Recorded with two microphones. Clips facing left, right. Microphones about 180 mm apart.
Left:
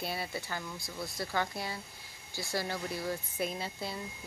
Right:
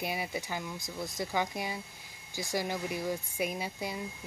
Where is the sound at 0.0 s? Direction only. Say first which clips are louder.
Right 2 dB; 15° right (ahead or behind).